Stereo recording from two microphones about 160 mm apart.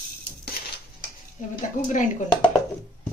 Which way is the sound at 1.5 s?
50° left (ahead or behind).